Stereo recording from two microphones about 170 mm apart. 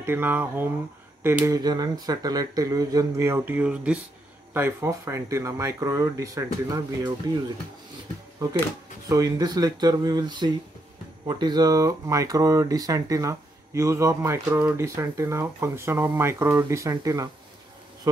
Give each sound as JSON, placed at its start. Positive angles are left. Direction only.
{"t": 0.0, "sound": "speech", "side_deg": -10}
{"t": 9.1, "sound": "speech", "side_deg": -20}